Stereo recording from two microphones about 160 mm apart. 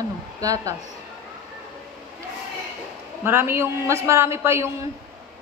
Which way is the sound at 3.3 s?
15° right (ahead or behind).